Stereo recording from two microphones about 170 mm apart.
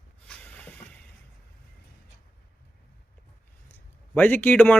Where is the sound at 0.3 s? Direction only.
5° left (ahead or behind).